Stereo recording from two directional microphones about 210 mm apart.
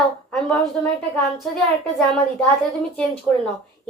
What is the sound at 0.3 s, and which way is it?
Speech, 5° left (ahead or behind).